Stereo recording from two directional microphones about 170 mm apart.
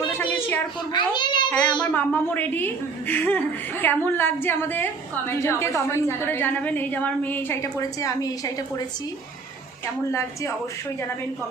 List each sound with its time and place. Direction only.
0.9 s a child's voice: 25° left (ahead or behind)
1.5 s a child's voice: 5° left (ahead or behind)
10.1 s a woman's voice: 15° left (ahead or behind)